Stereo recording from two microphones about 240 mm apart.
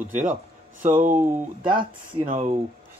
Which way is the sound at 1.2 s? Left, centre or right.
Centre.